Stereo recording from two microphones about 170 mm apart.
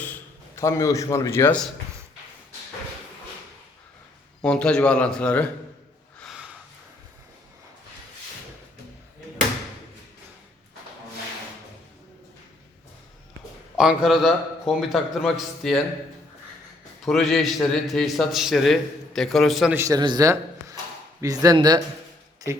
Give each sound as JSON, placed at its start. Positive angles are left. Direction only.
{"t": 0.5, "sound": "a man's voice", "side_deg": 20}
{"t": 4.4, "sound": "a man's voice", "side_deg": 5}
{"t": 6.1, "sound": "a sound", "side_deg": 0}
{"t": 13.7, "sound": "a man's voice", "side_deg": -5}
{"t": 17.1, "sound": "a man's voice", "side_deg": 0}
{"t": 19.7, "sound": "a man's voice", "side_deg": -20}